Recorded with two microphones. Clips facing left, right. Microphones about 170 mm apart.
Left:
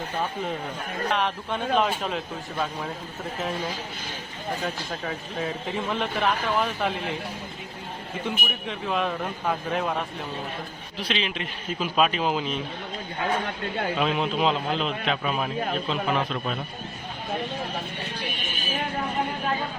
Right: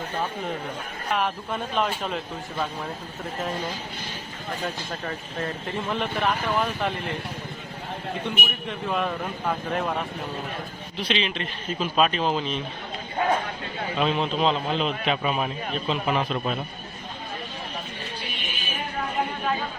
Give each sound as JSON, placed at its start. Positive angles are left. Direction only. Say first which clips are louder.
{"t": 1.1, "sound": "speech", "louder": "right 2 dB", "side_deg": -5}
{"t": 4.6, "sound": "speech", "louder": "even", "side_deg": 0}
{"t": 8.2, "sound": "speech", "louder": "even", "side_deg": 0}
{"t": 14.0, "sound": "speech", "louder": "right 2 dB", "side_deg": 5}
{"t": 18.3, "sound": "a sound", "louder": "left 1 dB", "side_deg": 45}